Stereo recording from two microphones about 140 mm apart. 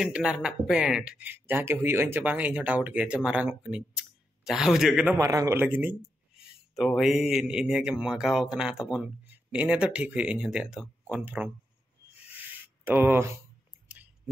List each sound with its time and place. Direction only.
0.0 s speech: 5° right (ahead or behind)
5.1 s a man's voice: 25° right (ahead or behind)
5.6 s speech: 15° right (ahead or behind)
6.7 s speech: centre (ahead or behind)
12.4 s a sound: 15° right (ahead or behind)